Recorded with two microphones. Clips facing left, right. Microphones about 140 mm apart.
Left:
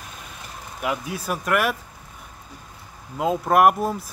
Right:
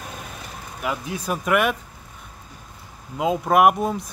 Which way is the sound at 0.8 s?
5° left (ahead or behind).